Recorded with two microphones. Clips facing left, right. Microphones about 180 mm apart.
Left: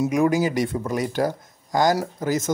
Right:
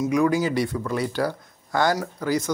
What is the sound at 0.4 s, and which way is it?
Speech, 15° left (ahead or behind).